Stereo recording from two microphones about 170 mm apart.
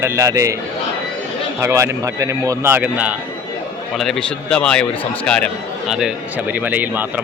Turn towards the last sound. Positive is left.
turn(degrees=-10)  # may be behind; listen again after turning